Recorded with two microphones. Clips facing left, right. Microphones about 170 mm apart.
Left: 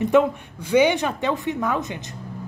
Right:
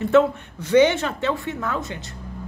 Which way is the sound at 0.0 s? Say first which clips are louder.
Right 1 dB; 10° left (ahead or behind).